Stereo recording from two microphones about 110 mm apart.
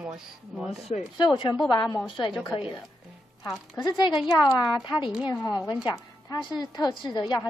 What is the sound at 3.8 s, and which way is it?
A woman's voice, 45° left (ahead or behind).